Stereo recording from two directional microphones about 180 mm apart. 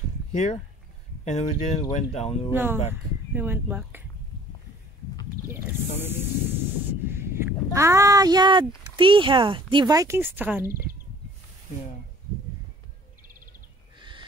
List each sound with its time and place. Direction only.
0.3 s speech: 40° left (ahead or behind)
2.5 s speech: 10° right (ahead or behind)
5.5 s speech: 10° right (ahead or behind)
13.9 s owl: 25° right (ahead or behind)